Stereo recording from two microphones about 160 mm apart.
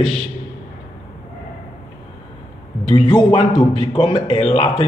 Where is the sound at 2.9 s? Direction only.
35° left (ahead or behind).